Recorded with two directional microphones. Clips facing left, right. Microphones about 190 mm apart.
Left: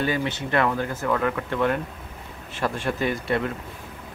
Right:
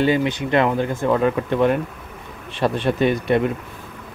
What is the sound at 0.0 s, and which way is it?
Speech, 20° right (ahead or behind).